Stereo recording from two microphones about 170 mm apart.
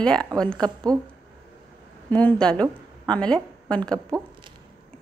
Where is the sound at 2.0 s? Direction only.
10° left (ahead or behind).